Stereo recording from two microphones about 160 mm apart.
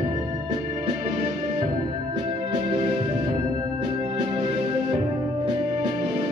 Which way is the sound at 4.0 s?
40° right (ahead or behind).